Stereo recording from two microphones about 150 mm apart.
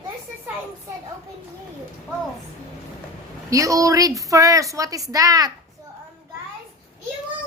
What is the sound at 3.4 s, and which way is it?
A woman's voice, 20° right (ahead or behind).